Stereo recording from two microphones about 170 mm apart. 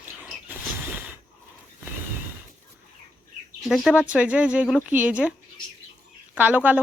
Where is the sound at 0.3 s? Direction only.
10° right (ahead or behind).